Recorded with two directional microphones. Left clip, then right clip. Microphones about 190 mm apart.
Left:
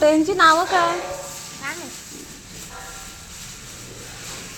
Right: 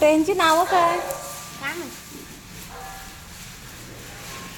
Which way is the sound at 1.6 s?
45° right (ahead or behind).